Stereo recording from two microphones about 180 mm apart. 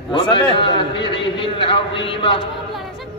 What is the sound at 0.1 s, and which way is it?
A man's voice, 25° left (ahead or behind).